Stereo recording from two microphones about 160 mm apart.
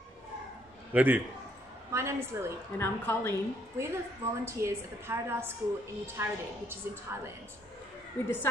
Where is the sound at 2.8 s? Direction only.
15° left (ahead or behind).